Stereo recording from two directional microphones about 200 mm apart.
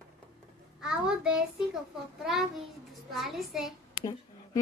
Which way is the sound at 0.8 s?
5° right (ahead or behind).